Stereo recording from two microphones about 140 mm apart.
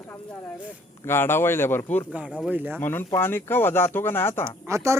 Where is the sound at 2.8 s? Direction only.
15° left (ahead or behind).